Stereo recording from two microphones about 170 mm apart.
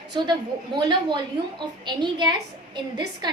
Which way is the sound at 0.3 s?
25° right (ahead or behind).